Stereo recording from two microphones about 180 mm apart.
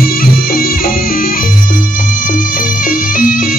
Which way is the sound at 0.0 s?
55° left (ahead or behind).